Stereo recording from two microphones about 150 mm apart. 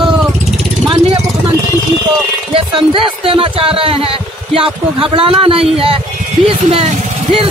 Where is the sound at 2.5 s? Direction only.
35° right (ahead or behind).